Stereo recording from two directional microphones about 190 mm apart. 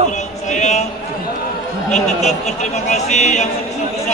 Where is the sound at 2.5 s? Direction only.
40° left (ahead or behind).